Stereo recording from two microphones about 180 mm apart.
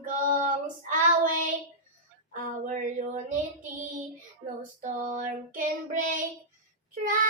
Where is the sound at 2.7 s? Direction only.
45° right (ahead or behind).